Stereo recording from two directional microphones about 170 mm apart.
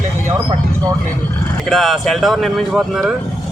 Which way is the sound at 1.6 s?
Centre (ahead or behind).